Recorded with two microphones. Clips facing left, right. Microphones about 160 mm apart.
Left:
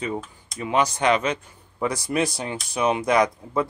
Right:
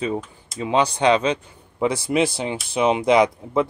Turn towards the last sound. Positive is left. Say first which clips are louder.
# right 4 dB
turn(degrees=-20)  # may be behind; listen again after turning